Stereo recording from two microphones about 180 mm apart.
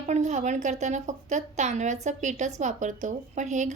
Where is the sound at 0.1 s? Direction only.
40° right (ahead or behind).